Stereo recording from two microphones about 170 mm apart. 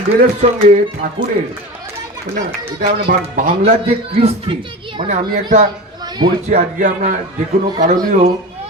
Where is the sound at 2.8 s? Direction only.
60° right (ahead or behind).